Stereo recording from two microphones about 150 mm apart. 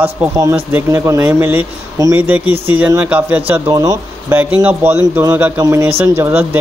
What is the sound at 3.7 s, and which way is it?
Speech, 25° right (ahead or behind).